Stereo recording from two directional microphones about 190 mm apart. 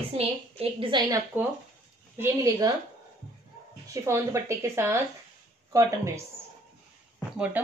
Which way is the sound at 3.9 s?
15° right (ahead or behind).